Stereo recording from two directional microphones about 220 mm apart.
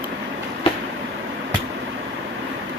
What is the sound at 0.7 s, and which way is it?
Train, 25° left (ahead or behind).